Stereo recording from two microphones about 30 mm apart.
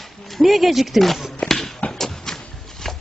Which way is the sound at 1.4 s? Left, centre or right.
Centre.